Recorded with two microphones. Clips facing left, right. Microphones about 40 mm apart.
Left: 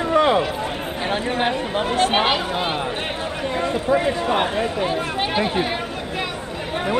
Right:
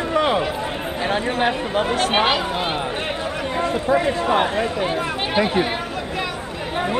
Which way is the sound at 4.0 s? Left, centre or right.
Centre.